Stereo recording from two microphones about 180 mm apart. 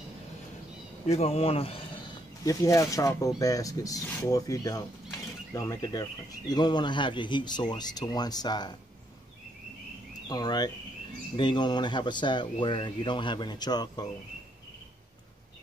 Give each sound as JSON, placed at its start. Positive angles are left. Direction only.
{"t": 1.0, "sound": "speech", "side_deg": 35}
{"t": 2.4, "sound": "speech", "side_deg": 20}
{"t": 10.2, "sound": "speech", "side_deg": 20}